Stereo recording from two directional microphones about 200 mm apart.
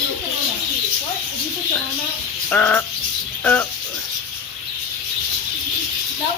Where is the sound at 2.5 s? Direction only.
5° left (ahead or behind).